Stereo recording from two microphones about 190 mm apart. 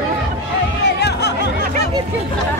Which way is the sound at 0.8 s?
60° left (ahead or behind).